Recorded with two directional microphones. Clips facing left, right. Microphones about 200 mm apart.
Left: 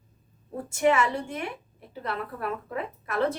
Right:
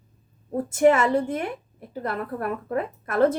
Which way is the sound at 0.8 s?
50° right (ahead or behind).